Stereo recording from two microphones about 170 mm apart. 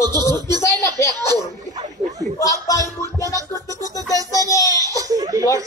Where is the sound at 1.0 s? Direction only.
15° left (ahead or behind).